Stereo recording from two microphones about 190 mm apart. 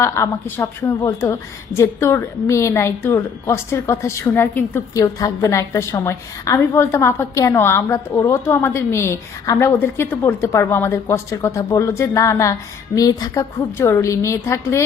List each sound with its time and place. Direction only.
0.0 s a woman's voice: 15° left (ahead or behind)